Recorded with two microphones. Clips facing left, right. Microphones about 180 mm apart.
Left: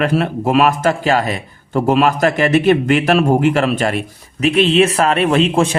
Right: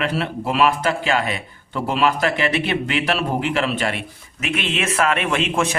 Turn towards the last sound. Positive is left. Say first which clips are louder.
# left 7 dB
turn(degrees=35)  # may be behind; listen again after turning